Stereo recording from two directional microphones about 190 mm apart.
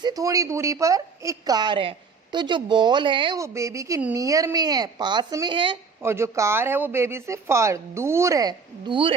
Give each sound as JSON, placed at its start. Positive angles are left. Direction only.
{"t": 0.0, "sound": "a woman's voice", "side_deg": -20}
{"t": 6.0, "sound": "speech", "side_deg": -15}